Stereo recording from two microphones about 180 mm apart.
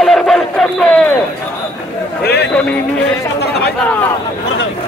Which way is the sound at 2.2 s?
65° left (ahead or behind).